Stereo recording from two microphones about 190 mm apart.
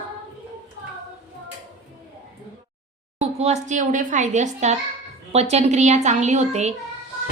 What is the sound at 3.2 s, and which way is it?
Speech, 35° right (ahead or behind).